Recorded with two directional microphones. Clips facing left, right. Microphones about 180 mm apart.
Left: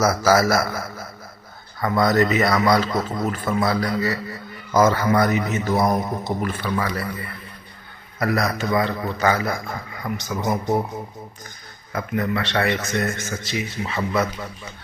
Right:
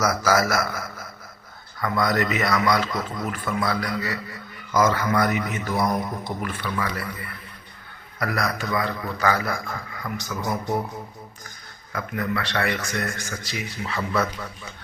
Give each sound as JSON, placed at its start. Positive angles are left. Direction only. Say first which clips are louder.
{"t": 0.3, "sound": "a man's voice", "louder": "left 4 dB", "side_deg": 30}
{"t": 6.4, "sound": "a man's voice", "louder": "left 4 dB", "side_deg": 35}
{"t": 8.2, "sound": "a man's voice", "louder": "left 4 dB", "side_deg": 25}
{"t": 11.9, "sound": "a man's voice", "louder": "left 4 dB", "side_deg": 25}